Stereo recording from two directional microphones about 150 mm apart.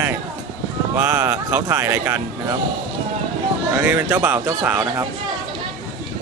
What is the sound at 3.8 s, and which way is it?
Speech, 15° right (ahead or behind).